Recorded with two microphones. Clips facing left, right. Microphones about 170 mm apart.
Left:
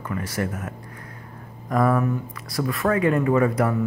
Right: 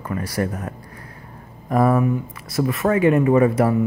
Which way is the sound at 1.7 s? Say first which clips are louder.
Right 3 dB; 25° right (ahead or behind).